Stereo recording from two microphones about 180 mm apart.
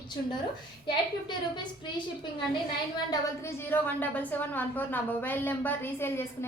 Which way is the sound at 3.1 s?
15° left (ahead or behind).